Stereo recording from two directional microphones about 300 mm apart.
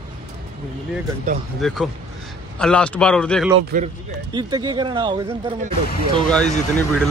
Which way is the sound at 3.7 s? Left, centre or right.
Centre.